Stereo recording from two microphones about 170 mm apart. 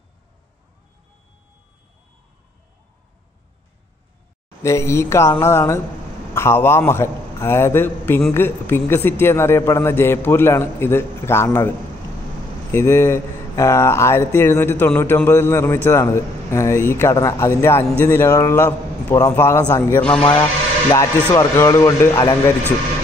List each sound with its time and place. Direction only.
4.6 s speech: 15° left (ahead or behind)
12.7 s speech: 15° left (ahead or behind)
20.9 s speech: 20° left (ahead or behind)